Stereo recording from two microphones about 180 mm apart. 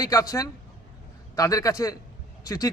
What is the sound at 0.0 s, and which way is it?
Speech, 20° left (ahead or behind).